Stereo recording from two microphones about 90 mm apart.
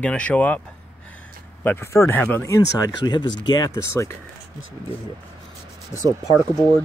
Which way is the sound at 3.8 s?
30° left (ahead or behind).